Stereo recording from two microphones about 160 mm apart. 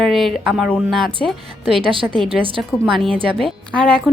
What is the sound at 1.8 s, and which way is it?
Speech, 35° right (ahead or behind).